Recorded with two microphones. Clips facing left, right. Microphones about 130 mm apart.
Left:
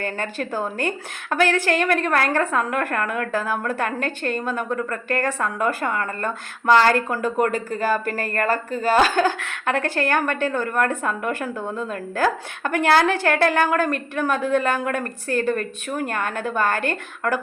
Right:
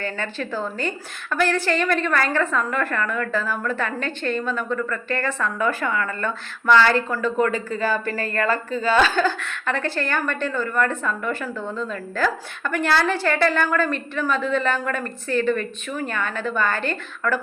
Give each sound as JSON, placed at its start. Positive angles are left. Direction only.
{"t": 0.0, "sound": "a woman's voice", "side_deg": 45}
{"t": 11.6, "sound": "a woman's voice", "side_deg": 15}
{"t": 11.9, "sound": "a woman's voice", "side_deg": 50}